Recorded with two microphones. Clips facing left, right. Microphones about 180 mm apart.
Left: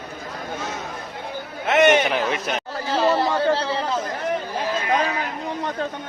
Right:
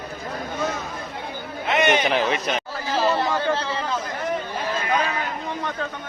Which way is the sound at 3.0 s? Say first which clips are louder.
Left 3 dB; 35° left (ahead or behind).